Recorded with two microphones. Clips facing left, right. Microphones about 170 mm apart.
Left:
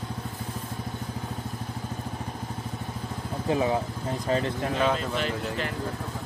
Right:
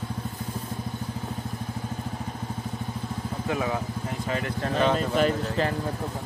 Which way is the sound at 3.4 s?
30° left (ahead or behind).